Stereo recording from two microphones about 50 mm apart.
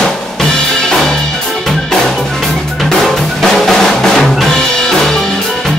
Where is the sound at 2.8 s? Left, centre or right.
Centre.